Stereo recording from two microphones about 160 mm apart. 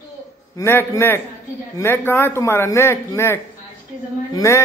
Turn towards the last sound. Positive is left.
turn(degrees=20)  # may be behind; listen again after turning